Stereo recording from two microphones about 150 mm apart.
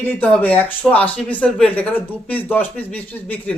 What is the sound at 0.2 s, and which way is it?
A man's voice, 10° left (ahead or behind).